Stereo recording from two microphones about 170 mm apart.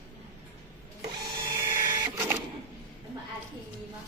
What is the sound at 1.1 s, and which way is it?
Printer, 25° right (ahead or behind).